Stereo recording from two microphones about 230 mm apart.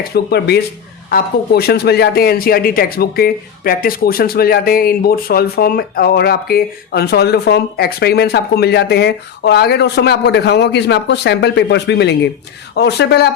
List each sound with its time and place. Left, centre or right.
0.0 s speech: left